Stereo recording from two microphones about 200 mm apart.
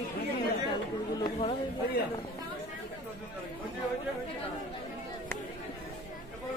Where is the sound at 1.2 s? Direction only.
25° left (ahead or behind).